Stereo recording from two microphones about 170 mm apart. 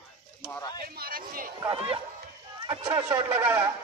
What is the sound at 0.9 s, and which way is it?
Speech, 60° right (ahead or behind).